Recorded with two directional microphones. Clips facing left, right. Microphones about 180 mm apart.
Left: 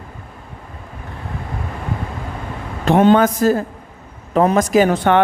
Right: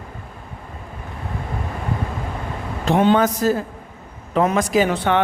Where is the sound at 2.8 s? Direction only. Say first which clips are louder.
Left 4 dB; 50° left (ahead or behind).